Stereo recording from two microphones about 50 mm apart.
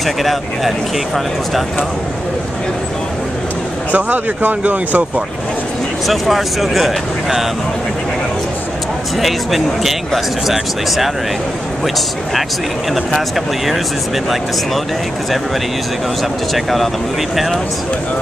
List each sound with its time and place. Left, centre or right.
0.0 s speech: centre
3.9 s speech: right
6.0 s speech: centre
9.2 s speech: centre
16.5 s speech: centre